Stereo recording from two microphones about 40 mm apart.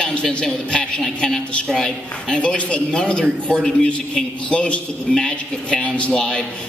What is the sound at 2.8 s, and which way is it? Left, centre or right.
A man's voice, left.